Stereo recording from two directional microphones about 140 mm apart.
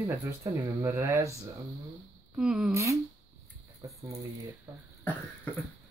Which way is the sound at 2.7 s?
20° right (ahead or behind).